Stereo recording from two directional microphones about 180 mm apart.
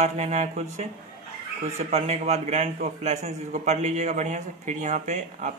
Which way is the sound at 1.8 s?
35° right (ahead or behind).